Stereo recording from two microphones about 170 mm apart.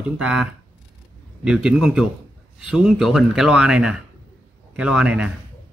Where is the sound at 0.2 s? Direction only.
5° right (ahead or behind).